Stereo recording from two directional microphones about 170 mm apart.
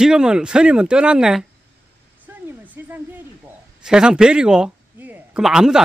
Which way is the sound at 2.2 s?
10° right (ahead or behind).